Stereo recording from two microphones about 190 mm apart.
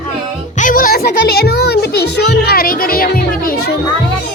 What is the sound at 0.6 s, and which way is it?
Music, 45° left (ahead or behind).